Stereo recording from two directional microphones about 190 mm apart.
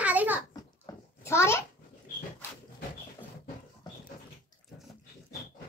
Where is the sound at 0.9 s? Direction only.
20° left (ahead or behind).